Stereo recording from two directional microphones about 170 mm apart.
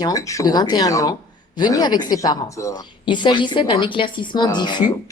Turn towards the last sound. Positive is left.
turn(degrees=25)  # may be behind; listen again after turning